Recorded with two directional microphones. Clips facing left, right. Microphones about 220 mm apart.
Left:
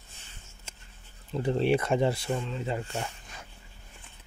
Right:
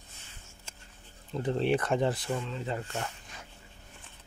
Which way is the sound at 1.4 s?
10° left (ahead or behind).